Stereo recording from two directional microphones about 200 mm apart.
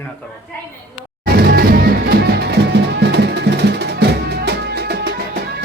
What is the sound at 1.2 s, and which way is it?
Music, 50° right (ahead or behind).